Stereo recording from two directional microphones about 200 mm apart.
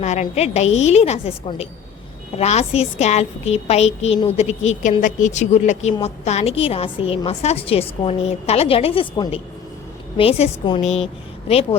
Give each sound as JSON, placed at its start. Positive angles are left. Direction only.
{"t": 0.0, "sound": "a woman's voice", "side_deg": 35}